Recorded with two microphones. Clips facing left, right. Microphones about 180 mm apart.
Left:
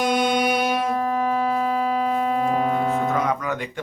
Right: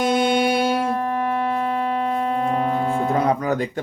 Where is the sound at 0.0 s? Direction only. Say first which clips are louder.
Right 2 dB; 25° right (ahead or behind).